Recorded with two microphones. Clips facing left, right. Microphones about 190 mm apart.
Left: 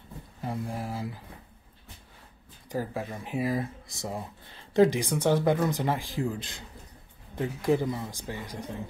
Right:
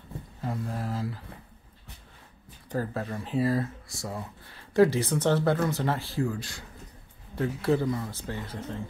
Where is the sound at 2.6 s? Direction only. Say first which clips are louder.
Right 1 dB; 10° left (ahead or behind).